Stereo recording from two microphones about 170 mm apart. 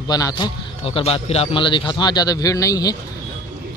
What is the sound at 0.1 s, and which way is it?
A man's voice, 25° left (ahead or behind).